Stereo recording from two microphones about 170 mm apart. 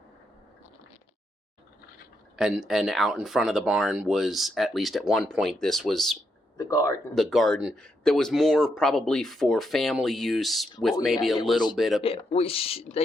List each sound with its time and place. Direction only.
2.3 s speech: 5° right (ahead or behind)
6.6 s speech: 20° left (ahead or behind)
7.1 s speech: centre (ahead or behind)
12.0 s speech: 35° left (ahead or behind)